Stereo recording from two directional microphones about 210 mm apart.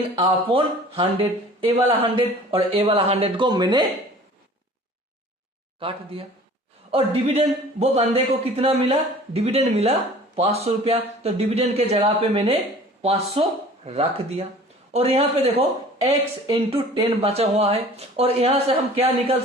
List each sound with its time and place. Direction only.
0.2 s speech: 25° right (ahead or behind)
6.9 s speech: 30° right (ahead or behind)